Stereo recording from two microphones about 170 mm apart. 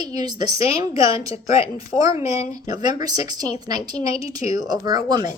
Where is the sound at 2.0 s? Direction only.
20° right (ahead or behind).